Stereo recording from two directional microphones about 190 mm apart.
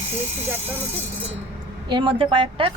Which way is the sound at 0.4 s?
10° right (ahead or behind).